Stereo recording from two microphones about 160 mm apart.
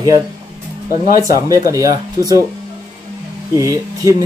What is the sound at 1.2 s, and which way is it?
Speech, 20° right (ahead or behind).